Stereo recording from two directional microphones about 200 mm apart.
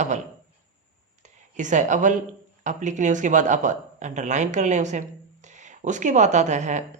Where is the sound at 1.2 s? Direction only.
35° right (ahead or behind).